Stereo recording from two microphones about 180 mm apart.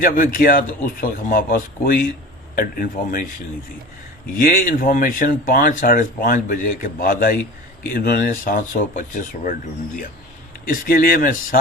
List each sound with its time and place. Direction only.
0.0 s speech: 50° left (ahead or behind)
4.4 s speech: 50° left (ahead or behind)
10.7 s speech: 50° left (ahead or behind)